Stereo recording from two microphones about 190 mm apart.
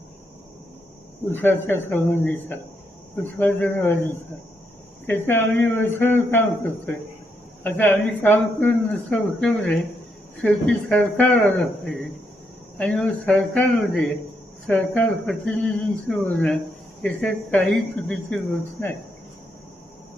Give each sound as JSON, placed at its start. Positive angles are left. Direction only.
{"t": 1.3, "sound": "speech", "side_deg": 10}
{"t": 7.6, "sound": "speech", "side_deg": 10}